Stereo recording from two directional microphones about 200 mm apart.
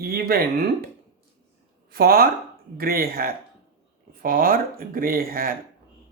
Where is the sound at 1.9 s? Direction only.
50° right (ahead or behind).